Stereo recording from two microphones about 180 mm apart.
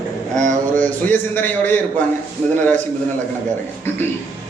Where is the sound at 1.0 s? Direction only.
10° left (ahead or behind).